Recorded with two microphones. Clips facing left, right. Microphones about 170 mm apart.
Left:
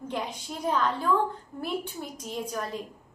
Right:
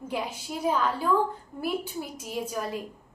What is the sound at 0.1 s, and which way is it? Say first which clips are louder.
Child singing: right 2 dB; 5° right (ahead or behind).